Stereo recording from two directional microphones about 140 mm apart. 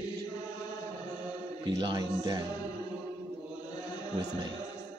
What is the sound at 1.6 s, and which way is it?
Speech, 30° right (ahead or behind).